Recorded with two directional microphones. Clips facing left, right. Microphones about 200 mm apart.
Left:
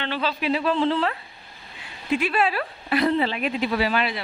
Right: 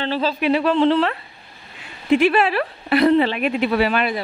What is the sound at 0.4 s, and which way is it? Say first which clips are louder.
A woman's voice: right 6 dB; 65° right (ahead or behind).